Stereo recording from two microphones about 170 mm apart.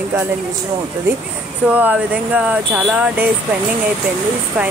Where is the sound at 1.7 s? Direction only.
10° right (ahead or behind).